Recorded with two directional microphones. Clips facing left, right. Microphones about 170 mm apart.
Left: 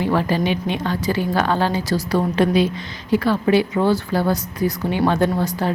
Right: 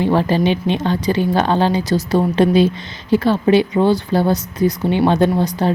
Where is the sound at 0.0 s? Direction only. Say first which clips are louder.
Right 4 dB; 25° right (ahead or behind).